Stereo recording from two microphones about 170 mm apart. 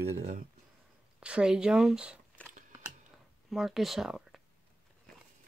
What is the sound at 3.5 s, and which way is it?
Speech, centre (ahead or behind).